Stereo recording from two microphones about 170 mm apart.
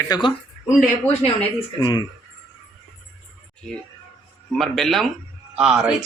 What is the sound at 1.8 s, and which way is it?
Speech, 25° left (ahead or behind).